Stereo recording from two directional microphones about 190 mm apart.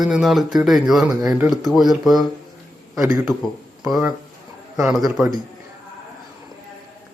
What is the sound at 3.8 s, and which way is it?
Speech, 5° right (ahead or behind).